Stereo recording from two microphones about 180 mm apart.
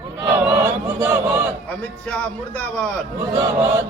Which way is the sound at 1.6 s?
10° left (ahead or behind).